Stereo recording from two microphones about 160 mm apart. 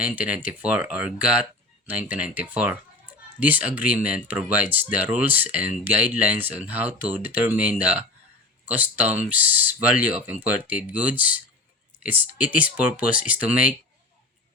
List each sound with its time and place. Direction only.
0.0 s speech: 10° right (ahead or behind)